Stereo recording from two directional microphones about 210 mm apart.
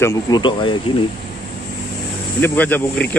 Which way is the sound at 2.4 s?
10° left (ahead or behind).